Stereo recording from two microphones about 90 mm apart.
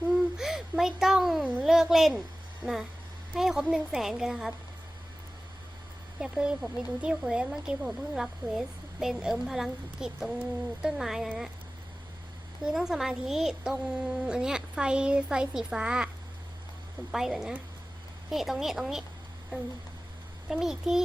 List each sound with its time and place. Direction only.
0.1 s a sound: 5° right (ahead or behind)
1.6 s speech: 5° right (ahead or behind)
2.6 s speech: 20° right (ahead or behind)
3.3 s a woman's voice: 5° right (ahead or behind)
6.1 s a woman's voice: 10° right (ahead or behind)
12.6 s speech: 5° right (ahead or behind)
17.1 s a woman's voice: 5° right (ahead or behind)
20.5 s a woman's voice: 5° right (ahead or behind)